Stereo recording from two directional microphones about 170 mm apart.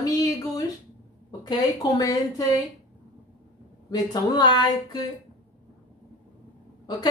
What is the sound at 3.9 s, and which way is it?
A woman's voice, 25° left (ahead or behind).